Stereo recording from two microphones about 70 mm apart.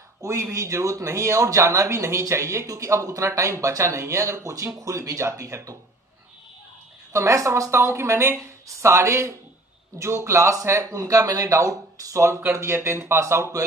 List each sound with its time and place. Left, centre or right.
0.2 s speech: right
7.1 s speech: right
12.4 s speech: right